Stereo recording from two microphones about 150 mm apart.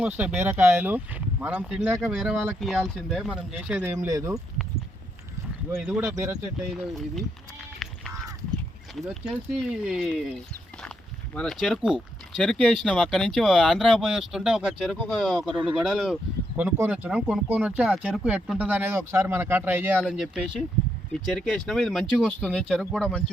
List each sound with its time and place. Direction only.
0.0 s speech: 10° right (ahead or behind)
3.9 s speech: 20° right (ahead or behind)
5.7 s speech: 10° right (ahead or behind)
6.1 s speech: 20° right (ahead or behind)
6.7 s speech: centre (ahead or behind)
7.8 s a sound: centre (ahead or behind)
9.0 s speech: centre (ahead or behind)
11.3 s speech: centre (ahead or behind)
16.6 s speech: 10° right (ahead or behind)
20.0 s speech: centre (ahead or behind)